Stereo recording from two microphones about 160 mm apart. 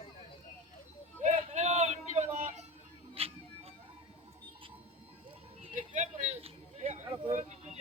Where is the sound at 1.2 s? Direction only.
45° right (ahead or behind).